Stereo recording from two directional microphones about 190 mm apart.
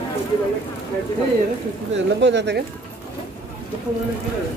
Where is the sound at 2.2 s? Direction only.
70° right (ahead or behind).